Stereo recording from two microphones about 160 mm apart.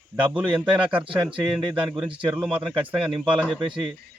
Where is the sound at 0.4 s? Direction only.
30° right (ahead or behind).